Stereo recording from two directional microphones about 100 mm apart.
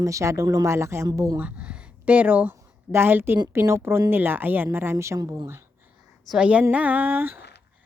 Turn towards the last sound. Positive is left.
turn(degrees=-20)  # may be behind; listen again after turning